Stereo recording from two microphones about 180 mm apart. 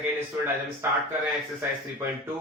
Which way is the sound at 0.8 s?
10° right (ahead or behind).